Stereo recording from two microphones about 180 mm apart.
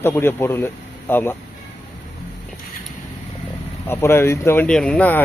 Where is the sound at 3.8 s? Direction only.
15° left (ahead or behind).